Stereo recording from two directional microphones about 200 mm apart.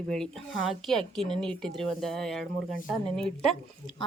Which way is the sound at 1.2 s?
35° left (ahead or behind).